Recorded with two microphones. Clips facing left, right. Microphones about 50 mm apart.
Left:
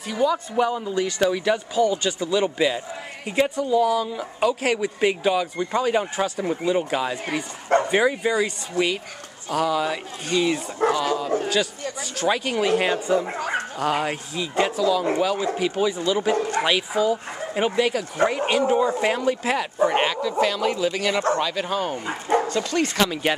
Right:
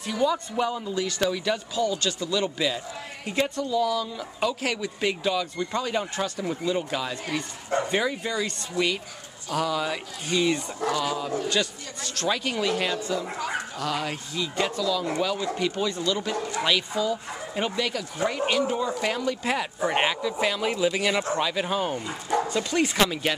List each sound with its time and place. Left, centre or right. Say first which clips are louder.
0.0 s speech: left 3 dB; centre; by 8.4 s left
8.8 s speech: left 3 dB; left
9.5 s speech: left 4 dB; centre
10.8 s speech: left 7 dB; left
11.4 s speech: left 3 dB; centre
12.6 s speech: left 7 dB; left
14.3 s speech: left 3 dB; centre
16.3 s speech: left 7 dB; left
16.6 s speech: left 1 dB; centre
19.4 s speech: left 3 dB; centre
19.9 s speech: left 3 dB; centre
21.9 s speech: left 4 dB; left
22.5 s speech: left 2 dB; centre